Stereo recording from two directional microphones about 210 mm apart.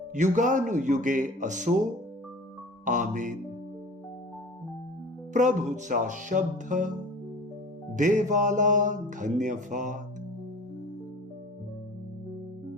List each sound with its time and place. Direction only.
0.1 s music: 35° right (ahead or behind)
2.8 s music: 40° right (ahead or behind)
5.3 s music: 35° right (ahead or behind)
7.9 s music: 35° right (ahead or behind)